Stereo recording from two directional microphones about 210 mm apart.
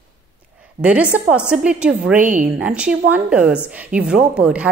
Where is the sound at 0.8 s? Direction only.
5° right (ahead or behind).